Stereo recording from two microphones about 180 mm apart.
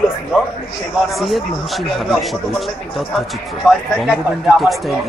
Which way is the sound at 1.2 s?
Centre (ahead or behind).